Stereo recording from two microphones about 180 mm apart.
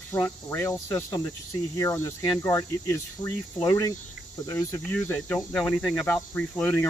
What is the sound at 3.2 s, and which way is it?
Speech, 25° left (ahead or behind).